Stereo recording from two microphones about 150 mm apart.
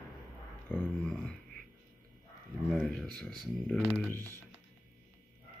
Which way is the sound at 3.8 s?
15° left (ahead or behind).